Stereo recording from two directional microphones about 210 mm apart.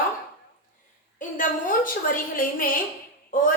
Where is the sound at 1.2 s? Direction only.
40° left (ahead or behind).